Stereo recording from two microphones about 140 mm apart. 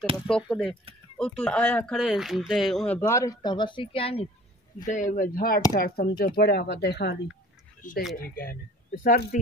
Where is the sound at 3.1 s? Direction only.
25° left (ahead or behind); by 4.3 s 40° left (ahead or behind).